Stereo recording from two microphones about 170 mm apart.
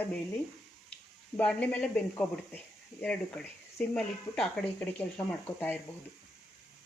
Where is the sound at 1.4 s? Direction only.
10° left (ahead or behind).